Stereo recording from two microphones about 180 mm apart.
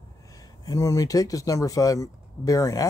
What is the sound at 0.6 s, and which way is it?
Speech, 20° left (ahead or behind).